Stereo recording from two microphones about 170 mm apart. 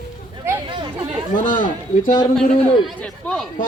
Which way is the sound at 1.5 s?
55° left (ahead or behind).